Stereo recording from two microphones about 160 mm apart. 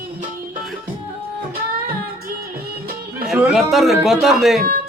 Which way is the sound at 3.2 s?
5° right (ahead or behind).